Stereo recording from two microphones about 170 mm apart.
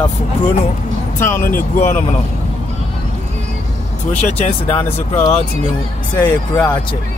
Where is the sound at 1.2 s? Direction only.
15° left (ahead or behind).